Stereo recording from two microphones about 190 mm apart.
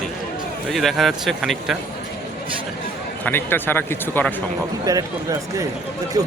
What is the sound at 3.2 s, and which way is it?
Speech, 10° left (ahead or behind).